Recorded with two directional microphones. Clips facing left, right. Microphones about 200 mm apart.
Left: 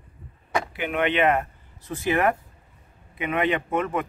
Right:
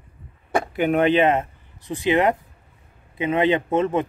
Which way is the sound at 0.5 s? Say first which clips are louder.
Right 6 dB; 45° right (ahead or behind).